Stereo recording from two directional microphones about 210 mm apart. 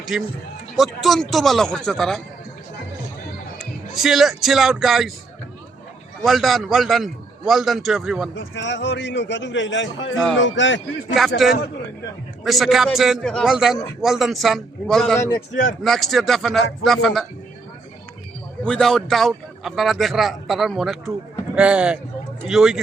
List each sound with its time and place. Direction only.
0.1 s speech: centre (ahead or behind)
3.6 s speech: centre (ahead or behind)
6.2 s speech: centre (ahead or behind)
8.4 s a man's voice: 60° left (ahead or behind)
11.2 s speech: centre (ahead or behind)
12.5 s speech: centre (ahead or behind)
18.6 s a man's voice: 5° left (ahead or behind)